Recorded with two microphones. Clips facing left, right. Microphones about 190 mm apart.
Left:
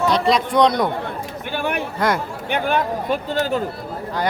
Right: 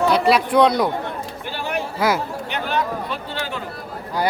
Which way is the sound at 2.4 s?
55° left (ahead or behind).